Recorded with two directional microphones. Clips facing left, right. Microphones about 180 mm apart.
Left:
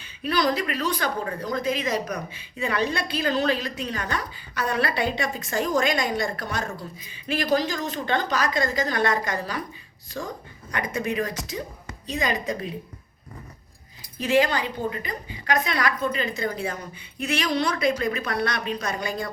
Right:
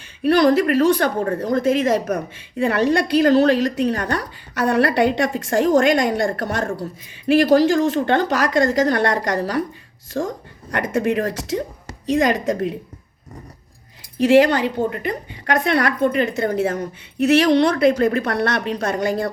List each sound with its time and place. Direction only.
0.2 s a woman's voice: 60° right (ahead or behind)
12.2 s speech: 75° right (ahead or behind)
14.2 s speech: 75° right (ahead or behind)
14.8 s a woman's voice: 55° right (ahead or behind)